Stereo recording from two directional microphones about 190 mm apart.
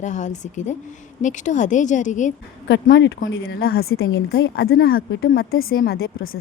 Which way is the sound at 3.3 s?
80° left.